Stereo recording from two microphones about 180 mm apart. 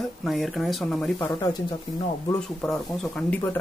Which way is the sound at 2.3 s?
5° left (ahead or behind).